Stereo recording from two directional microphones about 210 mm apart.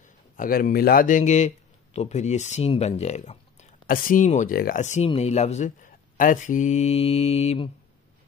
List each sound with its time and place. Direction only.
0.4 s speech: 40° left (ahead or behind); by 7.7 s 25° left (ahead or behind)